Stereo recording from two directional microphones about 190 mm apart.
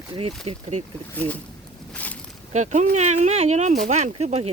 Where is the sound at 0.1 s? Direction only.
30° right (ahead or behind).